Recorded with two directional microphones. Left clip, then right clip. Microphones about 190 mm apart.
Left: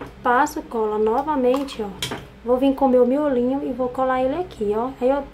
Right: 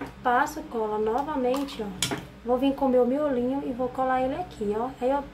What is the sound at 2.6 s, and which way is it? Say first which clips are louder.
Speech: left 6 dB; 20° left (ahead or behind).